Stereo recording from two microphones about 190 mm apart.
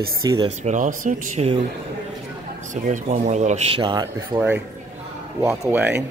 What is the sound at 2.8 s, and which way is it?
Speech, 40° right (ahead or behind).